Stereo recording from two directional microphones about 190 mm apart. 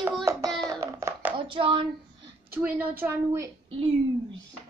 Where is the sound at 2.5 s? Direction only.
10° right (ahead or behind).